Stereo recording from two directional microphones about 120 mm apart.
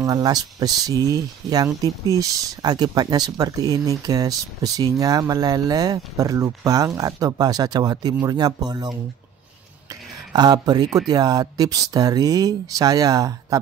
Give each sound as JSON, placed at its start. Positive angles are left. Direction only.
{"t": 0.0, "sound": "speech", "side_deg": -30}
{"t": 10.3, "sound": "speech", "side_deg": -35}